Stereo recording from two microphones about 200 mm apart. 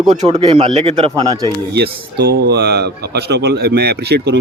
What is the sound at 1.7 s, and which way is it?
Speech, 55° right (ahead or behind).